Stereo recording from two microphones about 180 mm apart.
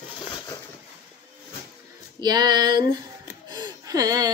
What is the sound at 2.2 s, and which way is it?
Speech, 25° right (ahead or behind).